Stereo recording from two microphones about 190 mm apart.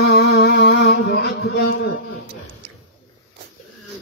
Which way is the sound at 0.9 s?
55° left (ahead or behind).